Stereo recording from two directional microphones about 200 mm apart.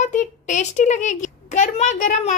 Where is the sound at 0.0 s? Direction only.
35° left (ahead or behind).